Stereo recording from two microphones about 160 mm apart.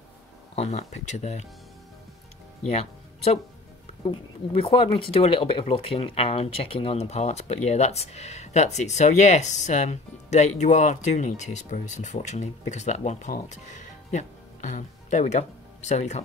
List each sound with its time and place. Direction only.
0.6 s speech: 45° left (ahead or behind)
2.7 s speech: 40° left (ahead or behind)